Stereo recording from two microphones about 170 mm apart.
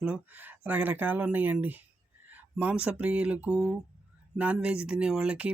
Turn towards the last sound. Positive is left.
turn(degrees=-5)  # may be behind; listen again after turning